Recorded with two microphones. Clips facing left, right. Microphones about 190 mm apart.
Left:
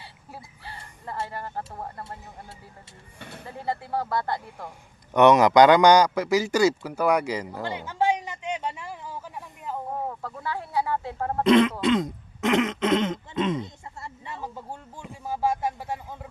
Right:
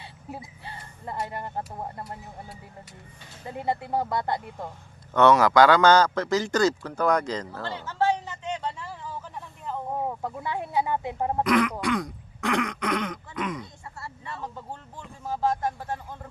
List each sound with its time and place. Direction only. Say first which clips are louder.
0.0 s a sound: right 4 dB; 20° right (ahead or behind)
1.3 s speech: right 1 dB; 20° right (ahead or behind)
3.2 s speech: left 7 dB; 65° left (ahead or behind)
3.7 s speech: right 1 dB; 20° right (ahead or behind)
5.1 s a man's voice: left 2 dB; 20° left (ahead or behind)
10.2 s speech: right 2 dB; 20° right (ahead or behind)
11.4 s throat clearing: left 7 dB; 25° left (ahead or behind)